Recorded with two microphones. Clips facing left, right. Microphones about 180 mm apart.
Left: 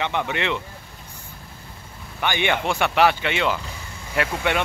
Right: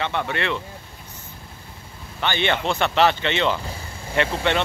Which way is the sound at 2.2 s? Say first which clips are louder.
Even; 15° left (ahead or behind).